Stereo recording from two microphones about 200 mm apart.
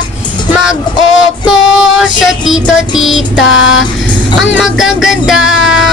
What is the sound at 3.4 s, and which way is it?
Music, 70° left (ahead or behind).